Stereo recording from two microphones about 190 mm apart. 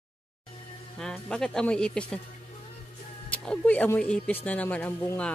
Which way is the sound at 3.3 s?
5° left (ahead or behind).